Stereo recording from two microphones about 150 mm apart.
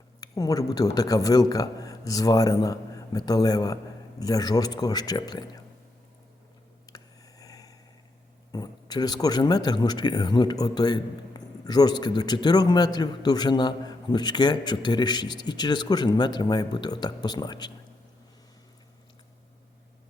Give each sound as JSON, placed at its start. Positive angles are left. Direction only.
{"t": 0.2, "sound": "speech", "side_deg": 25}
{"t": 6.8, "sound": "a sound", "side_deg": 25}
{"t": 8.5, "sound": "speech", "side_deg": 25}